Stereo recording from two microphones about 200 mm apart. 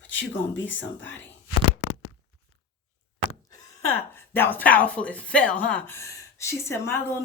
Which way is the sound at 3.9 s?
10° left (ahead or behind).